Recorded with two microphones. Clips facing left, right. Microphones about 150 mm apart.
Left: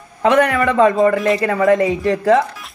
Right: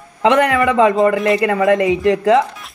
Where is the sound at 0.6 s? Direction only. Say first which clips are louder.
Even; 15° right (ahead or behind).